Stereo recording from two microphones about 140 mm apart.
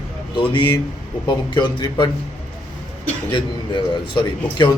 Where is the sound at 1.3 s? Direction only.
35° left (ahead or behind).